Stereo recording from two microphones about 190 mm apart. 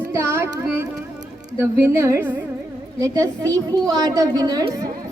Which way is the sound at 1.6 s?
15° right (ahead or behind).